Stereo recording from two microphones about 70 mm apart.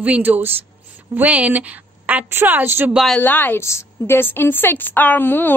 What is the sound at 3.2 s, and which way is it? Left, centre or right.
Speech, left.